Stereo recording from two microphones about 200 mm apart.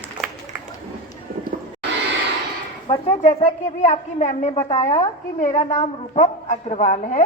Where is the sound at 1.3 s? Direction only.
45° right (ahead or behind).